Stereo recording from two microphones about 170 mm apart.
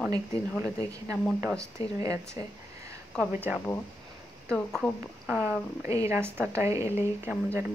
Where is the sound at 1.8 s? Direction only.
25° right (ahead or behind).